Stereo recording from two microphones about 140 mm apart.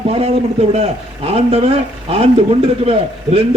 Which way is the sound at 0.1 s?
50° right (ahead or behind).